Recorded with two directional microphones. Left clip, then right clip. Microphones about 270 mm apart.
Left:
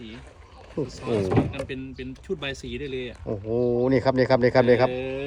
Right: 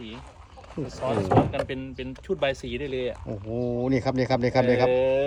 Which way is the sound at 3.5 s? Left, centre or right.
Left.